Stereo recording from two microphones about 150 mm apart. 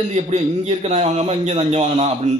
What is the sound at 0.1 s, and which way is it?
A man's voice, 45° right (ahead or behind).